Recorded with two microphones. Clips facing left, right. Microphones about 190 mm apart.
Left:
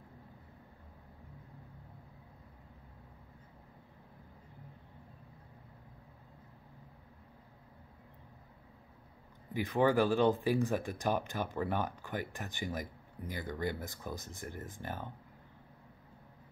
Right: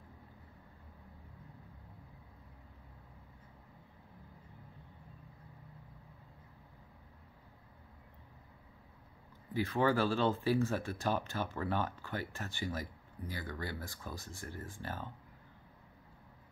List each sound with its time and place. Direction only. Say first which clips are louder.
9.5 s speech: left 2 dB; 15° left (ahead or behind)